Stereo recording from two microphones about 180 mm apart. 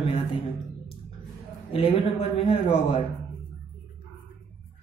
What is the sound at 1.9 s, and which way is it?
A man's voice, 35° left (ahead or behind).